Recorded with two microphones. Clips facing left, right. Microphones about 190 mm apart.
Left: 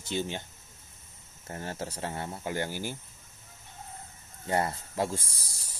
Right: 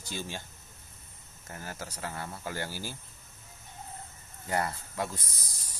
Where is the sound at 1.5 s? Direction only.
30° left (ahead or behind).